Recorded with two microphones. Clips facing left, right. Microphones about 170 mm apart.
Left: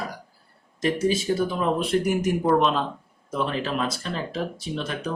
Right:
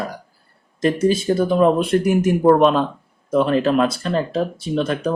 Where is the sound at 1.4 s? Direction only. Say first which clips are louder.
Right 9 dB; 60° right (ahead or behind).